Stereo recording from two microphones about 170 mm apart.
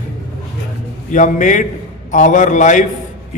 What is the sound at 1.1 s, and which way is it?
A man's voice, 50° left (ahead or behind).